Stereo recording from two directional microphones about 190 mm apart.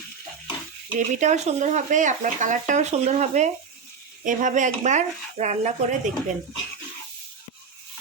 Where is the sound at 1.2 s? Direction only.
35° right (ahead or behind).